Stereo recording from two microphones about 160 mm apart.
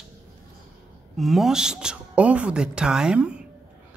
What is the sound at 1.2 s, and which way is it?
Speech, centre (ahead or behind).